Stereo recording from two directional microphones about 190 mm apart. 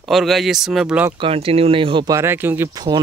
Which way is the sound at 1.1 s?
30° right (ahead or behind).